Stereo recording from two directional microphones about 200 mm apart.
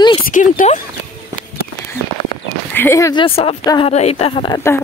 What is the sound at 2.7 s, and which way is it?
Speech, 10° left (ahead or behind).